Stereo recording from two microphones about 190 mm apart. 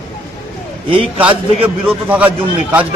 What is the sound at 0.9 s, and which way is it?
Speech, 30° right (ahead or behind).